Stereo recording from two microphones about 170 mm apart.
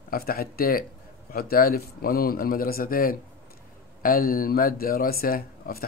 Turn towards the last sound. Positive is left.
turn(degrees=60)  # may be behind; listen again after turning